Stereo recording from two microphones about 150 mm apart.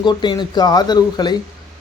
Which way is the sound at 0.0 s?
30° left (ahead or behind).